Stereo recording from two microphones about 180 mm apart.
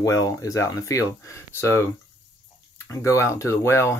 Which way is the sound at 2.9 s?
15° left (ahead or behind).